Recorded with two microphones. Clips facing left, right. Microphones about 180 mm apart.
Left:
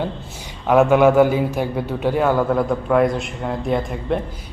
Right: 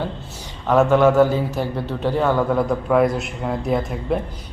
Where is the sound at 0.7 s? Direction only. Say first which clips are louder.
Left 1 dB; 10° left (ahead or behind).